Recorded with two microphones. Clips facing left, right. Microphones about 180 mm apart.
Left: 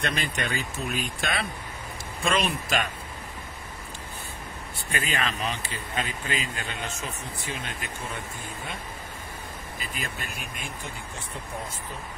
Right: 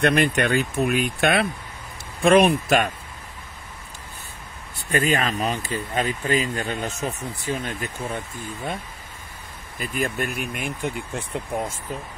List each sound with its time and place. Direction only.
0.0 s speech: 60° right (ahead or behind)
4.9 s speech: 45° right (ahead or behind)
9.8 s speech: 55° right (ahead or behind)